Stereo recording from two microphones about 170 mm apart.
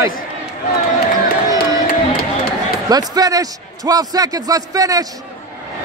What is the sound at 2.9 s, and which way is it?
A man's voice, 20° right (ahead or behind).